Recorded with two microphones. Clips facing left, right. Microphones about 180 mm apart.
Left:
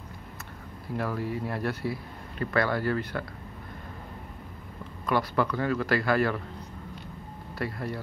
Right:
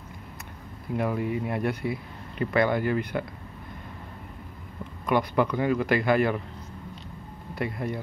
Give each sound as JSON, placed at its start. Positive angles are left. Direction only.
{"t": 0.9, "sound": "speech", "side_deg": -15}
{"t": 5.0, "sound": "speech", "side_deg": -15}
{"t": 7.5, "sound": "speech", "side_deg": -20}